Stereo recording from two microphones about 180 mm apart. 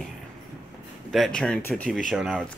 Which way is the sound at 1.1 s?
5° left (ahead or behind).